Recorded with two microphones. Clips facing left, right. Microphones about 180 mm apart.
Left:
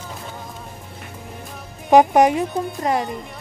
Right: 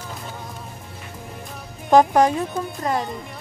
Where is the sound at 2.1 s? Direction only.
20° left (ahead or behind).